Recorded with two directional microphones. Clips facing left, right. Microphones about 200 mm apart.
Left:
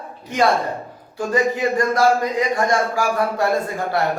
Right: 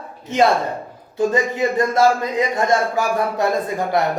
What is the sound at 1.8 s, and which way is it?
A man's voice, 25° right (ahead or behind).